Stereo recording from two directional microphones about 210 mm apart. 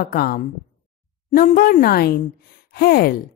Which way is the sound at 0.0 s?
45° left (ahead or behind).